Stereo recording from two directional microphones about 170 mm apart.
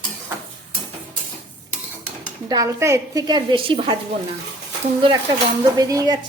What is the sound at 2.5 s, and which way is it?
A woman's voice, 20° right (ahead or behind).